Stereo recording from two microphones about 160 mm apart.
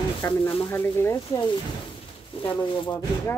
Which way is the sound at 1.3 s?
30° left (ahead or behind).